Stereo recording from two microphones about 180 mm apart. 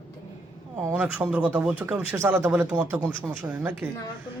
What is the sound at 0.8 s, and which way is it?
Speech, 10° right (ahead or behind).